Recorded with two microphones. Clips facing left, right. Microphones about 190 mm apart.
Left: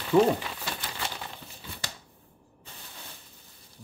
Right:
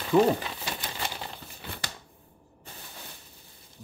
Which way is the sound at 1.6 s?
65° right (ahead or behind).